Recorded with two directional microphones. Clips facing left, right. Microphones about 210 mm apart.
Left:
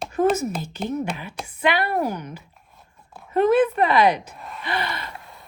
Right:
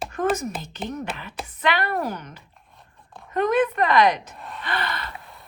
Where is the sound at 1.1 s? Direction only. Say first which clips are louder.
Left 2 dB; 10° left (ahead or behind).